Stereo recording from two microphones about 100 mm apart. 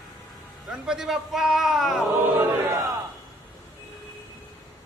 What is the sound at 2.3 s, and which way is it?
Crowd, 30° right (ahead or behind).